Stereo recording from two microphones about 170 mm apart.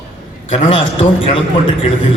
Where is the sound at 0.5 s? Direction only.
35° left (ahead or behind).